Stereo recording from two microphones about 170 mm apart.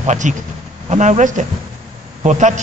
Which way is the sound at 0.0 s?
45° right (ahead or behind).